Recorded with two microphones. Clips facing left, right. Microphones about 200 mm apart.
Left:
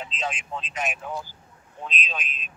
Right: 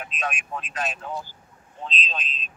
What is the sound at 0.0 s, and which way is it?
A man's voice, 25° left (ahead or behind).